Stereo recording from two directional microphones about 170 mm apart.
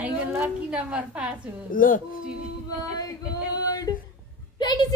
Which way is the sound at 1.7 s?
55° left (ahead or behind).